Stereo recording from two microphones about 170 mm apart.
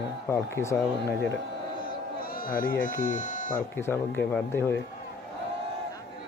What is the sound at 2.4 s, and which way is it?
Speech, 55° left (ahead or behind).